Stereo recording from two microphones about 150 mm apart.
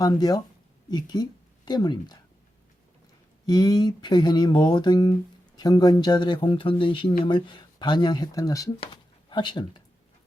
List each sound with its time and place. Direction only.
0.0 s speech: 25° left (ahead or behind)
3.4 s speech: 25° left (ahead or behind)